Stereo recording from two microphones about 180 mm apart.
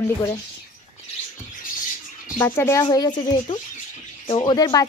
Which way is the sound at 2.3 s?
10° left (ahead or behind).